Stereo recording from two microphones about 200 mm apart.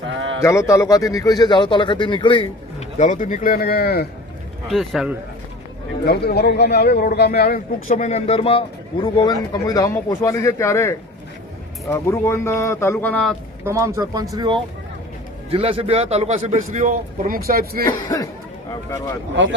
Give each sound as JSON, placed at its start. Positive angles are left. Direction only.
{"t": 0.4, "sound": "speech", "side_deg": 15}
{"t": 3.0, "sound": "speech", "side_deg": 40}
{"t": 4.7, "sound": "a man's voice", "side_deg": 0}
{"t": 6.1, "sound": "a man's voice", "side_deg": 55}
{"t": 13.7, "sound": "a man's voice", "side_deg": -15}
{"t": 17.8, "sound": "speech", "side_deg": 20}
{"t": 19.3, "sound": "speech", "side_deg": -65}